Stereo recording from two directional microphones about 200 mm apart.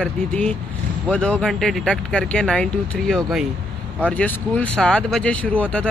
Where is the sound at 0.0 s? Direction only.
5° left (ahead or behind).